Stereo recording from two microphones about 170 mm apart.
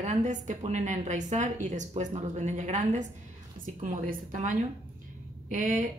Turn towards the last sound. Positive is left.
turn(degrees=-50)  # may be behind; listen again after turning